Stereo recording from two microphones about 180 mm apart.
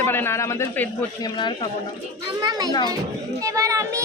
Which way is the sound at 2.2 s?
20° right (ahead or behind).